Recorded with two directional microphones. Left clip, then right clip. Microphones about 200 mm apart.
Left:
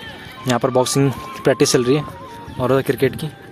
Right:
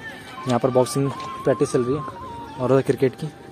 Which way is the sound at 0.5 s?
10° left (ahead or behind).